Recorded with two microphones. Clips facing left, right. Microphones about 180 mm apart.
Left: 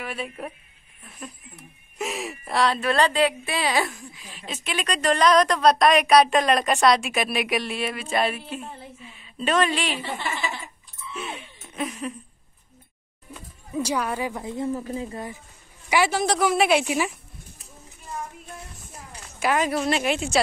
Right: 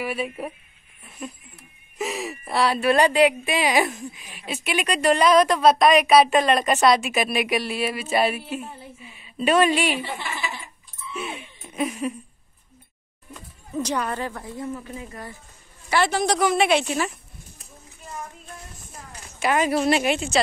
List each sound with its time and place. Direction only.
0.0 s speech: 5° right (ahead or behind)
2.0 s speech: centre (ahead or behind)
11.1 s laughter: 10° right (ahead or behind)
13.3 s a sound: 5° left (ahead or behind)
14.7 s speech: 35° left (ahead or behind)
15.9 s a woman's voice: 5° left (ahead or behind)
19.4 s a woman's voice: centre (ahead or behind)